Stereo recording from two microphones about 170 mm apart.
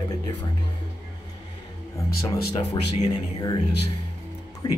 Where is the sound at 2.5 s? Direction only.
25° left (ahead or behind).